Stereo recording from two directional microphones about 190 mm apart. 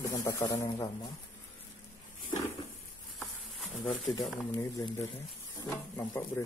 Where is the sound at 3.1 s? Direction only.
Centre (ahead or behind).